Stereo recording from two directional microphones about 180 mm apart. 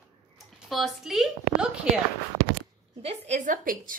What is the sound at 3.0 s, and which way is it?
Speech, 40° right (ahead or behind).